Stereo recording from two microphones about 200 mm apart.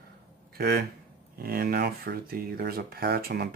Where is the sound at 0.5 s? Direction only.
50° right (ahead or behind).